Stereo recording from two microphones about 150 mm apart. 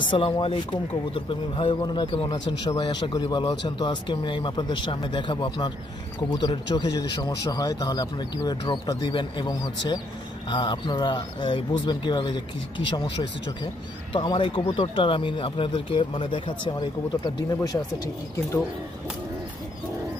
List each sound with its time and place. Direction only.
0.0 s speech: 35° left (ahead or behind)
14.1 s speech: 35° left (ahead or behind)